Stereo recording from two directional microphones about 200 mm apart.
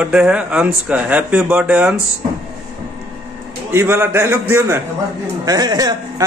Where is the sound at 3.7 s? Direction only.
10° right (ahead or behind).